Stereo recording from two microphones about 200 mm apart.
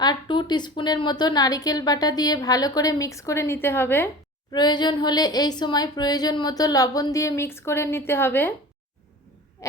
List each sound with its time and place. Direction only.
0.0 s a woman's voice: 20° left (ahead or behind)
4.5 s a woman's voice: 20° left (ahead or behind)
9.6 s owl: 15° left (ahead or behind)